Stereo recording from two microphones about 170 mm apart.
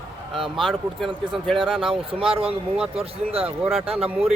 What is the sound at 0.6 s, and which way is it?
Speech, centre (ahead or behind).